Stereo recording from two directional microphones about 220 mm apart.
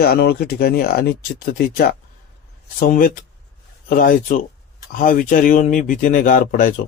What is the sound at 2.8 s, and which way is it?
Speech, 40° left (ahead or behind).